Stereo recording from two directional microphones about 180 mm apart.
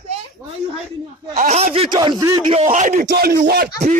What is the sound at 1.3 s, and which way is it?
Speech, 40° right (ahead or behind).